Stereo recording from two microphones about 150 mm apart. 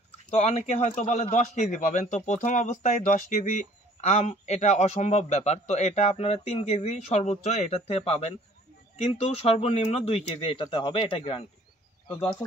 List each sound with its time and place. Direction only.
0.3 s a man's voice: 45° left (ahead or behind)